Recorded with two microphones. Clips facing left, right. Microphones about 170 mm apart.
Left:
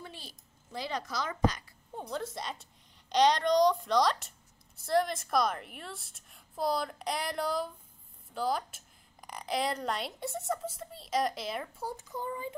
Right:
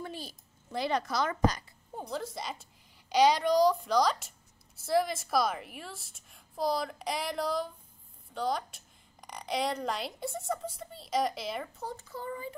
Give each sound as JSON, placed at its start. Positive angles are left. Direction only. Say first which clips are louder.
{"t": 0.0, "sound": "a sound", "louder": "right 7 dB", "side_deg": -45}
{"t": 0.7, "sound": "a woman's voice", "louder": "right 5 dB", "side_deg": -65}
{"t": 2.0, "sound": "a woman's voice", "louder": "even", "side_deg": 0}